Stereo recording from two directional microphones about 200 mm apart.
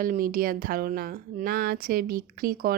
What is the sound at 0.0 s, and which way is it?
A woman's voice, 45° right (ahead or behind).